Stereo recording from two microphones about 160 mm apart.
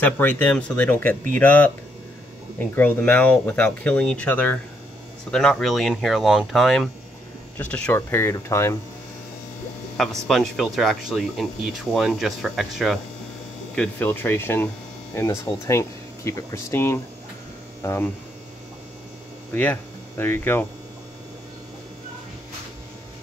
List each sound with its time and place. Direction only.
0.0 s speech: 10° left (ahead or behind)
9.9 s speech: centre (ahead or behind)
13.7 s speech: 10° left (ahead or behind)
19.5 s speech: 10° left (ahead or behind)